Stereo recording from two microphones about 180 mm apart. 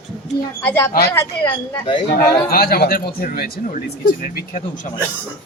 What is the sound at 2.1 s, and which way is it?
Speech, 55° left (ahead or behind).